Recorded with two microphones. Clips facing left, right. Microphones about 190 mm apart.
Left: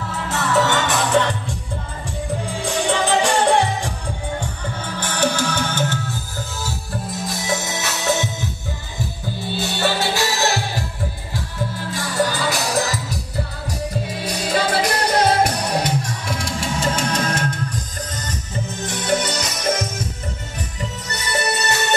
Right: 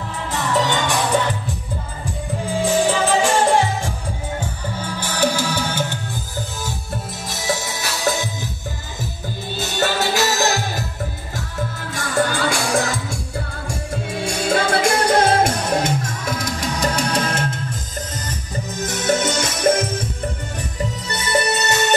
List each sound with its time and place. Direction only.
0.3 s music: 15° right (ahead or behind)
2.6 s music: centre (ahead or behind)
7.4 s music: 30° right (ahead or behind)
9.6 s music: 45° right (ahead or behind)
12.2 s music: 50° right (ahead or behind)
14.2 s music: 50° right (ahead or behind); by 17.6 s 30° right (ahead or behind)
18.8 s music: 45° right (ahead or behind)
21.1 s music: 25° right (ahead or behind)